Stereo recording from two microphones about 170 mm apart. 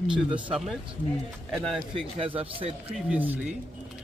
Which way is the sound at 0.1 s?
5° right (ahead or behind).